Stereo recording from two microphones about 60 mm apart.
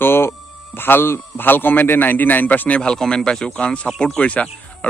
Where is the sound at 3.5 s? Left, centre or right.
Centre.